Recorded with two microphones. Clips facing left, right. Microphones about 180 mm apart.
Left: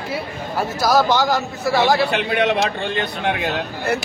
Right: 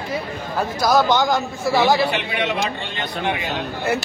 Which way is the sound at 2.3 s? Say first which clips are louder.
Left 5 dB; 50° left (ahead or behind).